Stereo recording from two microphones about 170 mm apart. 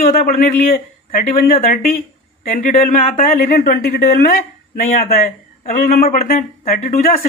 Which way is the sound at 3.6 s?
70° left (ahead or behind).